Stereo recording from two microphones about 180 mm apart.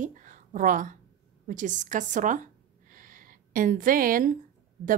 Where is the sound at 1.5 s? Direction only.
45° right (ahead or behind).